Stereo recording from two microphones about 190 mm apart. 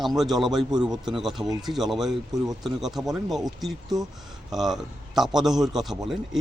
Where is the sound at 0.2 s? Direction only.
Centre (ahead or behind).